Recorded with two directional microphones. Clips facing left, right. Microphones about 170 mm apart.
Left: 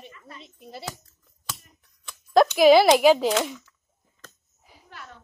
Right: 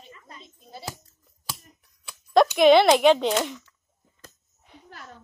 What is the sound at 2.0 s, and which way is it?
Speech, centre (ahead or behind).